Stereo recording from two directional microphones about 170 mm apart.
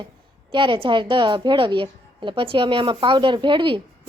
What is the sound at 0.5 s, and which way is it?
A woman's voice, 30° right (ahead or behind).